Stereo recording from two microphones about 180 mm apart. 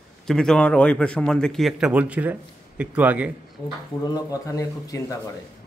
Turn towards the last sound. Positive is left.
turn(degrees=20)  # may be behind; listen again after turning